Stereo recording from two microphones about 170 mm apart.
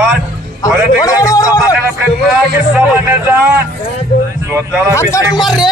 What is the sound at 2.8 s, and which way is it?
Speech, 10° right (ahead or behind).